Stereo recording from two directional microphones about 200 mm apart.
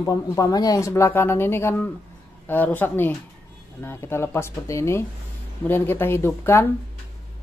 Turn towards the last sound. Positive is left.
turn(degrees=10)  # may be behind; listen again after turning